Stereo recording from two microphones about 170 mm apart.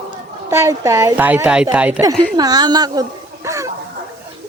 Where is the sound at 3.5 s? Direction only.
15° right (ahead or behind).